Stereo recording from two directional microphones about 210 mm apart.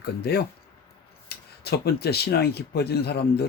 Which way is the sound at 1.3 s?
50° left (ahead or behind).